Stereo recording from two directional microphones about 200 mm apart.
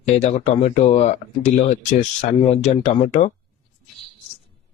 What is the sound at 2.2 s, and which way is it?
Speech, 35° left (ahead or behind).